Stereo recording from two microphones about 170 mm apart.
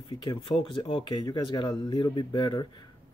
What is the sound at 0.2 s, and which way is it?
Speech, 30° left (ahead or behind).